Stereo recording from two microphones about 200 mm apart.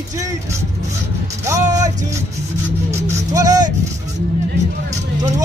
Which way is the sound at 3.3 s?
15° right (ahead or behind).